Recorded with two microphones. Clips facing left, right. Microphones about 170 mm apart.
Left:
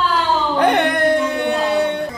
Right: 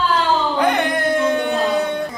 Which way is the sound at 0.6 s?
65° left (ahead or behind).